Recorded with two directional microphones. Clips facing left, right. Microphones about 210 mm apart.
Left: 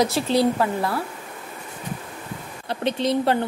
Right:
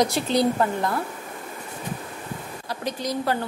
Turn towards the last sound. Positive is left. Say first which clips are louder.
# left 5 dB
turn(degrees=25)  # may be behind; listen again after turning